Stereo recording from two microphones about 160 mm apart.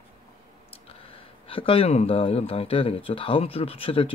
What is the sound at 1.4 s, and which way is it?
Speech, 35° left (ahead or behind).